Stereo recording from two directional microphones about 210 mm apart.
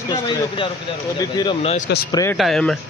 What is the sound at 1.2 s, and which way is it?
Speech, 20° left (ahead or behind).